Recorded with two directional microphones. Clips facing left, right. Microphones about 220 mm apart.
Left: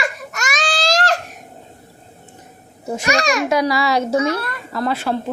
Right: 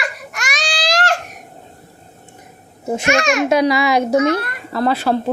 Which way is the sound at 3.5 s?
20° right (ahead or behind).